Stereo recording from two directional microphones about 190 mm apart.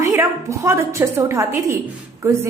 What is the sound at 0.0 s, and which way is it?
A woman's voice, 15° right (ahead or behind).